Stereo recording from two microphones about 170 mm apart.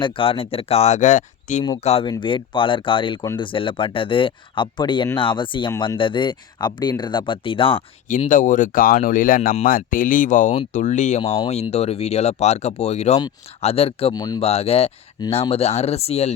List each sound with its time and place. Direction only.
0.0 s speech: 30° left (ahead or behind)
2.0 s speech: 30° left (ahead or behind)
6.0 s speech: 30° left (ahead or behind)
8.0 s speech: 50° left (ahead or behind)
11.2 s speech: 35° left (ahead or behind)
14.1 s speech: 25° left (ahead or behind)
14.4 s speech: 35° left (ahead or behind)